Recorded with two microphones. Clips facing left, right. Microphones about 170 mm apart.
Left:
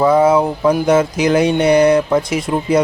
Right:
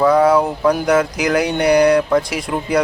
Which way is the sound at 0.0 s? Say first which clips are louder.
Left 1 dB; 25° left (ahead or behind).